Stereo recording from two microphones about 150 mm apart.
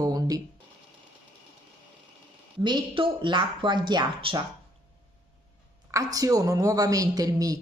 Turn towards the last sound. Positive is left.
turn(degrees=-25)  # may be behind; listen again after turning